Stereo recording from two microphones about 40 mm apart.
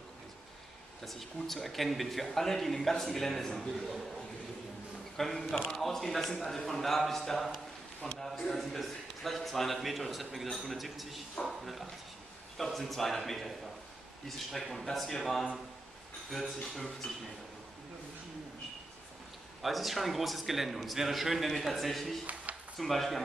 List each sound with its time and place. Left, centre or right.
1.0 s a man's voice: centre
5.1 s a man's voice: centre
19.6 s speech: centre
22.2 s a sound: right
22.8 s speech: centre